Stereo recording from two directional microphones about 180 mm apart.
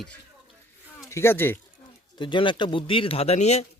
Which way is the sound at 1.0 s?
15° left (ahead or behind).